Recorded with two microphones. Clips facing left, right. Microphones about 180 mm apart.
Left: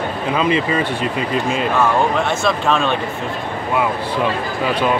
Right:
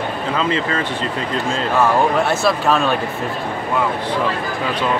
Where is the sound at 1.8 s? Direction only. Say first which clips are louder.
Right 3 dB; 5° right (ahead or behind).